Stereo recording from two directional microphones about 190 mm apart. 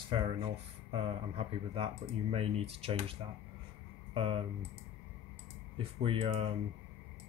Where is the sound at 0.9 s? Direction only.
30° right (ahead or behind).